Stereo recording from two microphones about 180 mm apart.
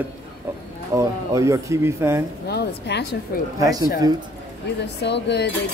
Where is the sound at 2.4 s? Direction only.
65° left (ahead or behind).